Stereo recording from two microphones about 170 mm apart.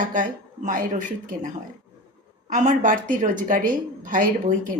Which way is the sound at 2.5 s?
45° right (ahead or behind).